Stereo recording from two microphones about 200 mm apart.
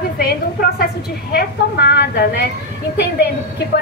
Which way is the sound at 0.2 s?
50° left (ahead or behind).